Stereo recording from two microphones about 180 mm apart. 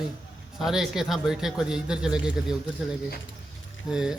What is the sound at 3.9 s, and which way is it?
Speech, 5° right (ahead or behind).